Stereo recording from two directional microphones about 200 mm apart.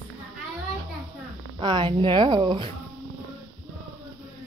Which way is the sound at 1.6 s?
20° right (ahead or behind).